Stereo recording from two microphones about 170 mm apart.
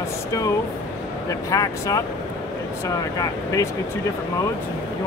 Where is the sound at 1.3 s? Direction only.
20° left (ahead or behind).